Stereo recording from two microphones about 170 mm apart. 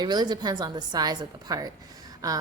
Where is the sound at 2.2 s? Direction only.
20° right (ahead or behind).